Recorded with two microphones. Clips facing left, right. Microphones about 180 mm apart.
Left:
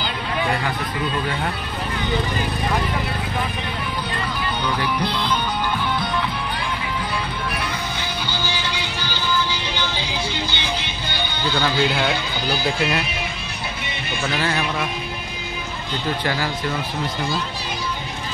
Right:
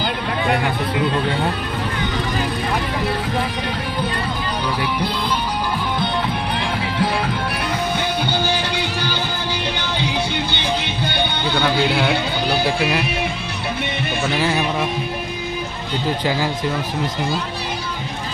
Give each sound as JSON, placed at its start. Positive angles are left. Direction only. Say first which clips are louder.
{"t": 8.3, "sound": "music", "louder": "right 6 dB", "side_deg": -55}
{"t": 11.9, "sound": "speech", "louder": "right 3 dB", "side_deg": -5}
{"t": 14.4, "sound": "speech", "louder": "right 3 dB", "side_deg": -10}